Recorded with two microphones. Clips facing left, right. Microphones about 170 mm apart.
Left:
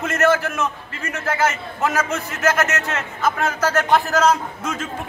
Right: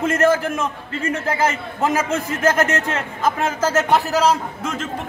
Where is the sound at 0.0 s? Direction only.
30° right (ahead or behind).